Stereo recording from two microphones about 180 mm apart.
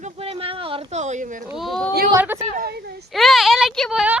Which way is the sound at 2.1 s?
15° right (ahead or behind).